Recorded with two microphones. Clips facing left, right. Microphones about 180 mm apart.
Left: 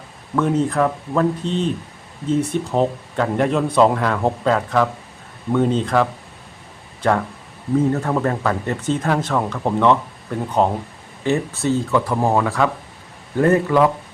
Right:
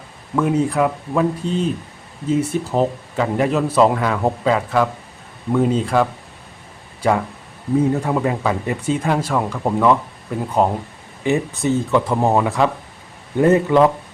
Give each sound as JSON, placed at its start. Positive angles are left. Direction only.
{"t": 0.3, "sound": "speech", "side_deg": -5}
{"t": 11.2, "sound": "speech", "side_deg": -15}